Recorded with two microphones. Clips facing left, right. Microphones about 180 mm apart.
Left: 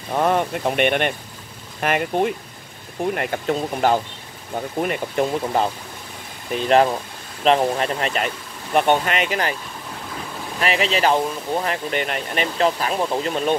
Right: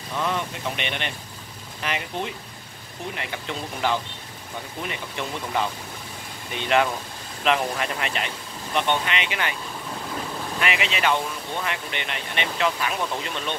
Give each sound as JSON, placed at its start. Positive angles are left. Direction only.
{"t": 0.1, "sound": "speech", "side_deg": 50}
{"t": 10.6, "sound": "speech", "side_deg": 35}